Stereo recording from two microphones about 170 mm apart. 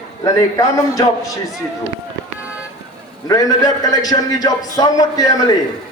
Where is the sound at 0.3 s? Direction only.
20° left (ahead or behind).